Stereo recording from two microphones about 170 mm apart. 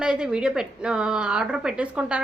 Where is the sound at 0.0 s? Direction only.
5° right (ahead or behind).